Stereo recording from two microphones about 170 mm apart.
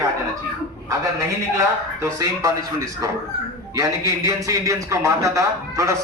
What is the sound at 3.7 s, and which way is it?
A man's voice, 20° right (ahead or behind).